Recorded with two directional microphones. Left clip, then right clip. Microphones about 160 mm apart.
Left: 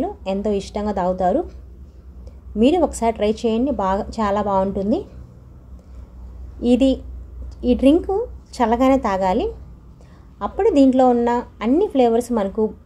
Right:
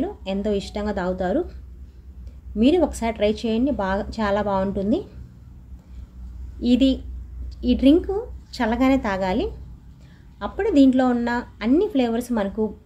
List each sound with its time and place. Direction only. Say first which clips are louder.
0.0 s a woman's voice: left 4 dB; 20° left (ahead or behind)
2.6 s a woman's voice: left 3 dB; 20° left (ahead or behind)
6.6 s a woman's voice: left 3 dB; 20° left (ahead or behind)